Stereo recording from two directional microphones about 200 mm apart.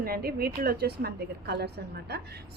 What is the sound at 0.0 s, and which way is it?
A woman's voice, 50° right (ahead or behind).